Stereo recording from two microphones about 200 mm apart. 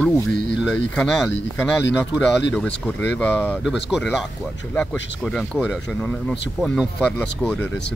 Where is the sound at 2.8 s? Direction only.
10° left (ahead or behind).